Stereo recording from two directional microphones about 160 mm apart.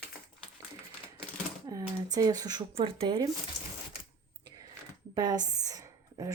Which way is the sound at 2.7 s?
35° right (ahead or behind).